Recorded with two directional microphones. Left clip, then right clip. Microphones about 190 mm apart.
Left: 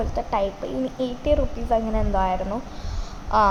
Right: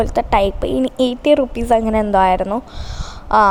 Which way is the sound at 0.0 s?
55° right (ahead or behind).